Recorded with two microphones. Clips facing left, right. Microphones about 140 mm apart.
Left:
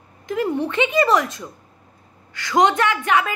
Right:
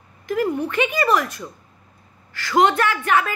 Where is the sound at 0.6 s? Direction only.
25° left (ahead or behind).